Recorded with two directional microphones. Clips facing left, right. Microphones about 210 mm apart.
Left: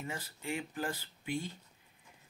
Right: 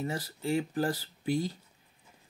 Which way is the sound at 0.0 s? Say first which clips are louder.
Right 8 dB; 35° right (ahead or behind).